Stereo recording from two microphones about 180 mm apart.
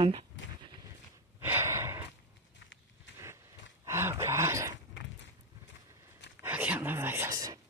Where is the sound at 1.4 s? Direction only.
15° right (ahead or behind).